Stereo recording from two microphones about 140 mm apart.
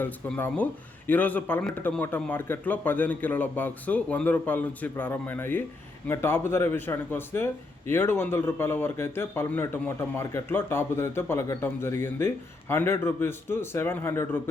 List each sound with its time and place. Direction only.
0.0 s speech: 15° left (ahead or behind)